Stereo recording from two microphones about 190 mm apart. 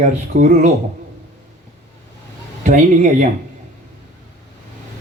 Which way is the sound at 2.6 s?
40° right (ahead or behind).